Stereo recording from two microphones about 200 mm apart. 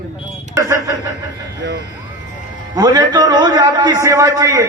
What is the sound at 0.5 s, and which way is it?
Speech, 15° right (ahead or behind).